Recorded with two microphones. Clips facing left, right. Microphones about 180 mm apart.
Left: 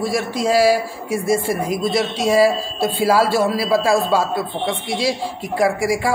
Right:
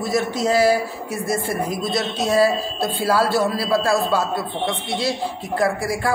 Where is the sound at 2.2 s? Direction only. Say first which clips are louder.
Left 2 dB; 10° left (ahead or behind).